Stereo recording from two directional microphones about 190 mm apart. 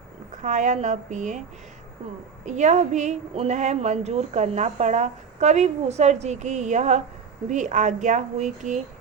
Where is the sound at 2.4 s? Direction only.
40° right (ahead or behind).